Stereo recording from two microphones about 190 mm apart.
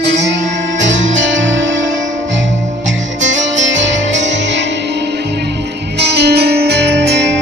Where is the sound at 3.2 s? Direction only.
75° right (ahead or behind).